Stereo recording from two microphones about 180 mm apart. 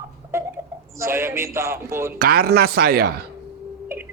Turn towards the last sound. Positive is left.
turn(degrees=-15)  # may be behind; listen again after turning